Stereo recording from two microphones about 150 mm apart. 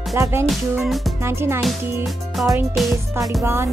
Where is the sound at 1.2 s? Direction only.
15° right (ahead or behind).